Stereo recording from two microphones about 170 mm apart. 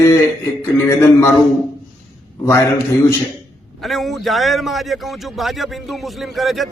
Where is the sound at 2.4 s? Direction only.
20° left (ahead or behind).